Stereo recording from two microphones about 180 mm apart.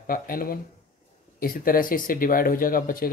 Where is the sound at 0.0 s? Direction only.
55° left (ahead or behind).